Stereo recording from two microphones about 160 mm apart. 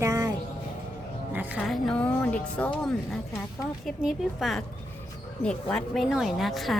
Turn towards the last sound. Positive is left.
turn(degrees=0)  # may be behind; listen again after turning